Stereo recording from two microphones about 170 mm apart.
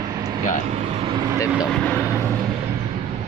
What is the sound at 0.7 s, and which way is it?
Speech, 40° right (ahead or behind).